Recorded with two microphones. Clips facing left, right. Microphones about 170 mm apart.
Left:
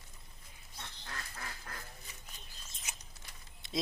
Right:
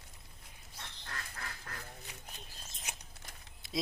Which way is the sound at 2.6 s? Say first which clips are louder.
Right 1 dB; 50° right (ahead or behind).